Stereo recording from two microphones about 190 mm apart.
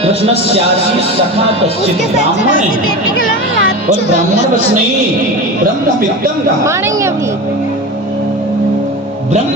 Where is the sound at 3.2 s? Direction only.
50° left (ahead or behind).